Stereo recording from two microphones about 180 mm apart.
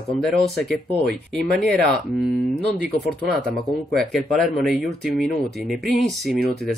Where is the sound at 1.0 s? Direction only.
65° right (ahead or behind).